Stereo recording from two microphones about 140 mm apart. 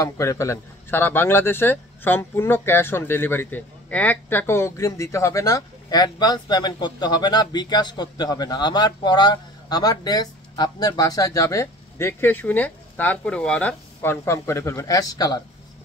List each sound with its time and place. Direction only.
0.0 s a man's voice: 20° left (ahead or behind)
14.2 s a man's voice: 20° left (ahead or behind)